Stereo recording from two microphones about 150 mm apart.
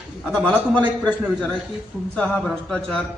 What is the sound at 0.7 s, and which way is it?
Speech, 10° left (ahead or behind).